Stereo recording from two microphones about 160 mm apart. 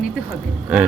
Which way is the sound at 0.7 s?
10° right (ahead or behind).